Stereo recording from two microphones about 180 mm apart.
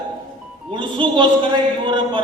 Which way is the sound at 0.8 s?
30° right (ahead or behind).